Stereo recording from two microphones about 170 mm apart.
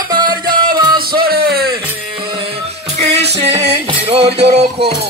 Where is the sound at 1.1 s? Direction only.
65° right (ahead or behind).